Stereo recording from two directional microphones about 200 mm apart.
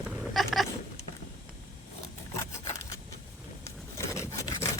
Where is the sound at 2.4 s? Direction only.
15° left (ahead or behind).